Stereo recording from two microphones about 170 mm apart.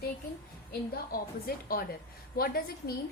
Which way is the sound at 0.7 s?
60° left (ahead or behind).